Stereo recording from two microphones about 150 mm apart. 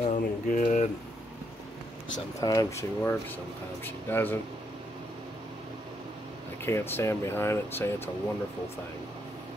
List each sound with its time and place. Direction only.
0.0 s speech: 55° left (ahead or behind)
2.1 s speech: 25° left (ahead or behind)
6.6 s speech: 15° left (ahead or behind)